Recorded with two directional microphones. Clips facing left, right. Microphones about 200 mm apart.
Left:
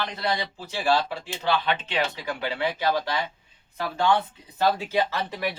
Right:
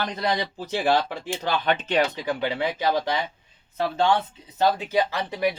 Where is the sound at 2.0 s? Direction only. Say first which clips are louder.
Right 5 dB; 15° right (ahead or behind).